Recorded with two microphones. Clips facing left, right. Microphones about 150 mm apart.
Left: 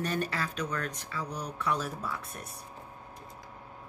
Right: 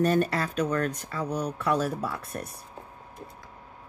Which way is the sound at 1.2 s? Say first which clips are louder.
Right 6 dB; 60° right (ahead or behind).